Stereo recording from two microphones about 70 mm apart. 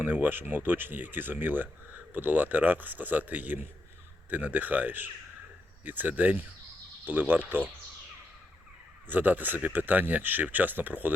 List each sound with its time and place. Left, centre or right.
0.0 s speech: right
9.0 s speech: right